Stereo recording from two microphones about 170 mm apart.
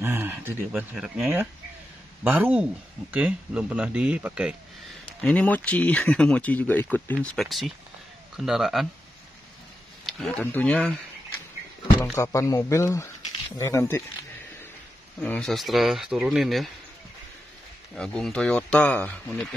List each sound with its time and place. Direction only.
0.0 s speech: 10° right (ahead or behind)
5.2 s speech: 10° left (ahead or behind)
10.0 s speech: centre (ahead or behind)
12.0 s speech: 15° left (ahead or behind)
15.1 s speech: 10° left (ahead or behind)
17.9 s speech: 5° left (ahead or behind)